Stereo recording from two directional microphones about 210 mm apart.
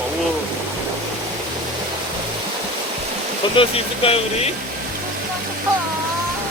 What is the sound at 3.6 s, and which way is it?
Speech, 25° left (ahead or behind).